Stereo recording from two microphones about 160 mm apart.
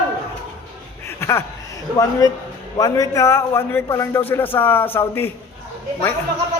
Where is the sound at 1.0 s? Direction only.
15° left (ahead or behind).